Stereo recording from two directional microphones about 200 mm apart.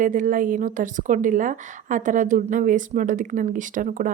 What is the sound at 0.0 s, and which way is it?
A woman's voice, 40° right (ahead or behind).